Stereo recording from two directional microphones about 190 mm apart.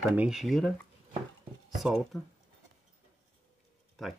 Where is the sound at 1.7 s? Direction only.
Centre (ahead or behind).